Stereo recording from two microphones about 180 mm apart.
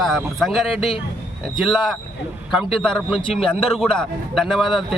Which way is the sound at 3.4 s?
5° left (ahead or behind).